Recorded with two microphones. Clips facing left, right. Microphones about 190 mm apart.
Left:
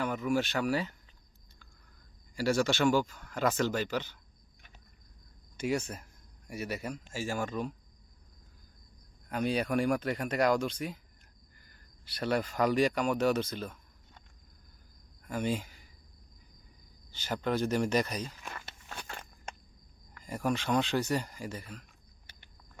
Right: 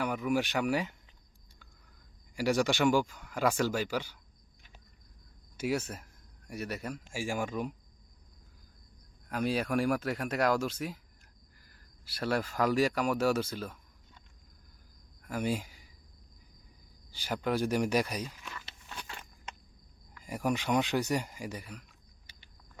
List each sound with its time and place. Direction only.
0.0 s speech: 10° right (ahead or behind)
2.3 s speech: 15° right (ahead or behind)
5.5 s speech: 5° right (ahead or behind)
7.1 s speech: 15° right (ahead or behind)
9.3 s speech: 5° right (ahead or behind)
15.2 s speech: 5° right (ahead or behind)
17.1 s speech: 10° right (ahead or behind)
18.4 s walk: 50° left (ahead or behind)
20.2 s speech: 15° right (ahead or behind)
22.3 s a sound: 55° left (ahead or behind)